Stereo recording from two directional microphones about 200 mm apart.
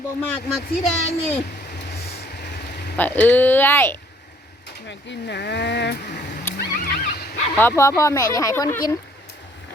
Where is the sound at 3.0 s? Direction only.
10° left (ahead or behind).